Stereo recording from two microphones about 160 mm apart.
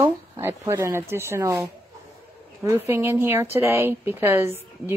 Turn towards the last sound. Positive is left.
turn(degrees=-15)  # may be behind; listen again after turning